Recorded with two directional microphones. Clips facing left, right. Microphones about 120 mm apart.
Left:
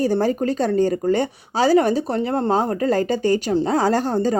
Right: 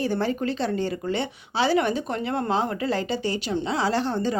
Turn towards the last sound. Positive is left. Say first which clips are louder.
# left 5 dB
turn(degrees=40)  # may be behind; listen again after turning